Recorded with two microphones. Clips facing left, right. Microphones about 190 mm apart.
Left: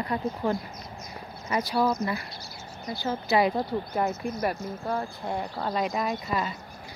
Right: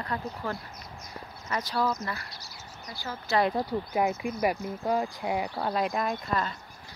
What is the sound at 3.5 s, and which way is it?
Speech, 10° right (ahead or behind).